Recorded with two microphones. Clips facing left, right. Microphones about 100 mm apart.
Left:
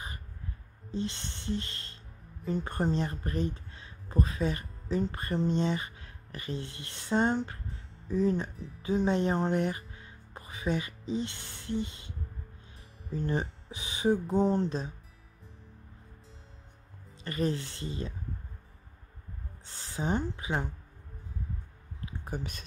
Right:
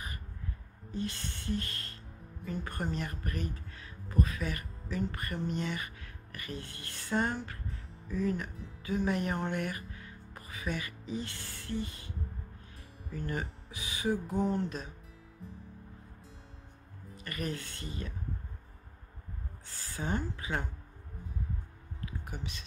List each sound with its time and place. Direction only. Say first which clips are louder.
0.9 s music: left 2 dB; 25° left (ahead or behind)
2.4 s speech: left 6 dB; 30° left (ahead or behind)
13.1 s speech: left 5 dB; 25° left (ahead or behind)
14.2 s music: left 5 dB; 30° left (ahead or behind)
17.1 s music: left 7 dB; 25° left (ahead or behind)
19.6 s music: left 4 dB; 25° left (ahead or behind)
22.3 s speech: left 5 dB; 45° left (ahead or behind)